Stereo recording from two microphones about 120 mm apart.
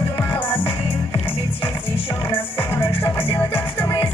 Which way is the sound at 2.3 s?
20° left (ahead or behind).